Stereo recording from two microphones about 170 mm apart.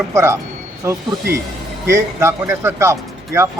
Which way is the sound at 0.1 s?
15° right (ahead or behind).